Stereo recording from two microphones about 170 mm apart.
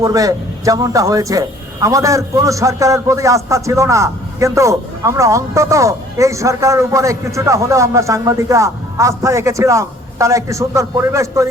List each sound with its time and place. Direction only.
0.0 s a man's voice: 20° right (ahead or behind)